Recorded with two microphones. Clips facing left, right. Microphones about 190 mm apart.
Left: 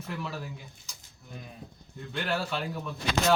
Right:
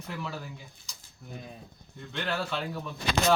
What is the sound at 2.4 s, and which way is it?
Speech, centre (ahead or behind).